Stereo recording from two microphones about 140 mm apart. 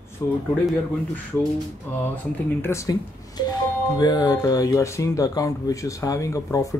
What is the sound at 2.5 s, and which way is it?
Speech, 20° left (ahead or behind).